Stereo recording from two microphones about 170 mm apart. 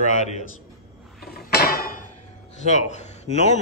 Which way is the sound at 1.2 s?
65° left (ahead or behind).